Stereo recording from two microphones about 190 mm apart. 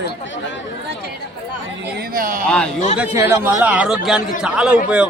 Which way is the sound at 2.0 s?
50° right (ahead or behind).